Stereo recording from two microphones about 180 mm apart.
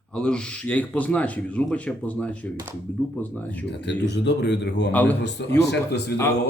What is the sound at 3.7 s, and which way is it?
Speech, 75° left (ahead or behind).